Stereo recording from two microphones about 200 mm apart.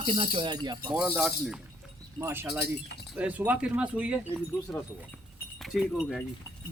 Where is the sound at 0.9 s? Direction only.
5° right (ahead or behind).